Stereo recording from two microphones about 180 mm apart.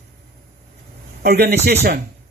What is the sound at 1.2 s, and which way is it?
Speech, 65° right (ahead or behind).